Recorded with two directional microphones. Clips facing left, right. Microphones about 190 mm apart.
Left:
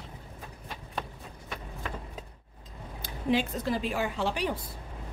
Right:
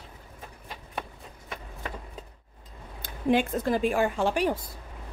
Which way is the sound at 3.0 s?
55° right (ahead or behind).